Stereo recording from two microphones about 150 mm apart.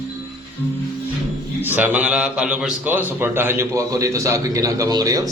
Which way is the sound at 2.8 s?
15° right (ahead or behind).